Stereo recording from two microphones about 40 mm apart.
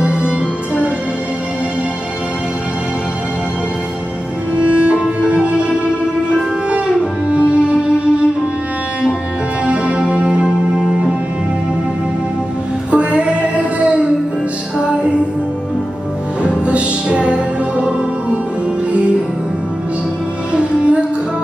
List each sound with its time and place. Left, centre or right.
5.3 s music: right
9.7 s music: right
12.9 s music: right
16.4 s music: right